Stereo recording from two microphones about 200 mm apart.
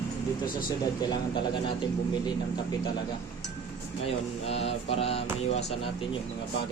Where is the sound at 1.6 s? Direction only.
25° left (ahead or behind).